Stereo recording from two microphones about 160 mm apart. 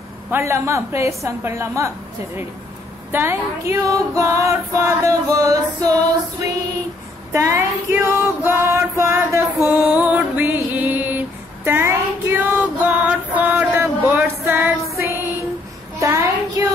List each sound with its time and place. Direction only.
0.3 s a woman's voice: 15° right (ahead or behind)
3.1 s female singing: 15° right (ahead or behind)
7.3 s female singing: 15° right (ahead or behind)
9.7 s a sound: 10° right (ahead or behind)
15.0 s music: 15° right (ahead or behind)
16.0 s child singing: 20° right (ahead or behind)